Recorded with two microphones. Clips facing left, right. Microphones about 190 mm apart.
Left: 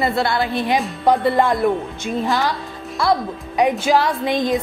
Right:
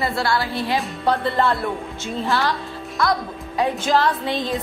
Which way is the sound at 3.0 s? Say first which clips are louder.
Left 3 dB; 30° left (ahead or behind).